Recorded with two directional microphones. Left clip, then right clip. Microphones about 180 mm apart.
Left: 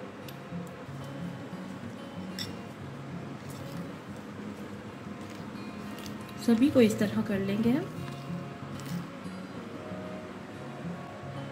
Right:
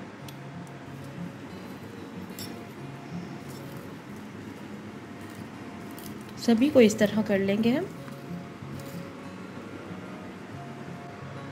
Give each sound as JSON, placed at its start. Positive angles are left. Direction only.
{"t": 6.4, "sound": "a woman's voice", "side_deg": -30}